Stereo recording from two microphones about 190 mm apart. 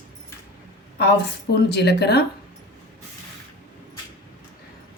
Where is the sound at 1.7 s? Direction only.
60° left (ahead or behind).